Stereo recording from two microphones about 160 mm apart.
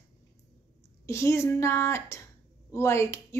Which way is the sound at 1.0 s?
15° left (ahead or behind).